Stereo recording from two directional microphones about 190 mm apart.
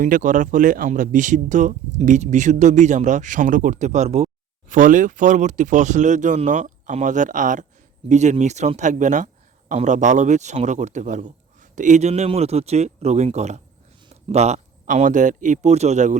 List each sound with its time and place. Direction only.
0.0 s speech: 45° right (ahead or behind)